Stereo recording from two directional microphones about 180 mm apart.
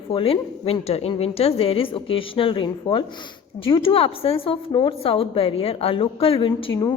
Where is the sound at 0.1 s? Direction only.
30° left (ahead or behind).